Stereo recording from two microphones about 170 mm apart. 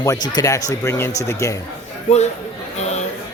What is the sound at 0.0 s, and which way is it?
Speech, 20° left (ahead or behind).